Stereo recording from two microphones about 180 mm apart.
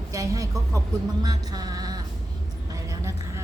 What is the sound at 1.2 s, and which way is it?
Music, 20° right (ahead or behind).